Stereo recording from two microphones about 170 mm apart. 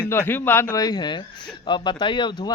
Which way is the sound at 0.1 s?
15° left (ahead or behind).